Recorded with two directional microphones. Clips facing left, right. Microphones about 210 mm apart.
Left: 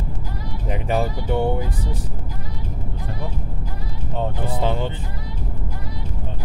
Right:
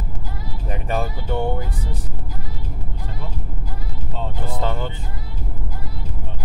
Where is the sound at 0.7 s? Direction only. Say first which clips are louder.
Left 3 dB; 15° left (ahead or behind).